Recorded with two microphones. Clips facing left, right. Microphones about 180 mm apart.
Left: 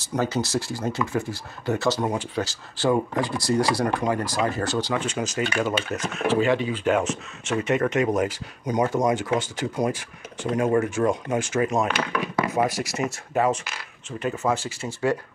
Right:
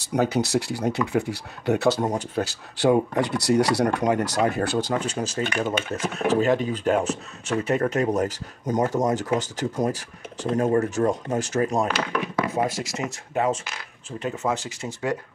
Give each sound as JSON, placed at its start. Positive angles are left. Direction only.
{"t": 0.0, "sound": "speech", "side_deg": -65}
{"t": 2.0, "sound": "speech", "side_deg": -40}
{"t": 2.4, "sound": "speech", "side_deg": -65}
{"t": 12.5, "sound": "speech", "side_deg": -25}
{"t": 14.2, "sound": "speech", "side_deg": -20}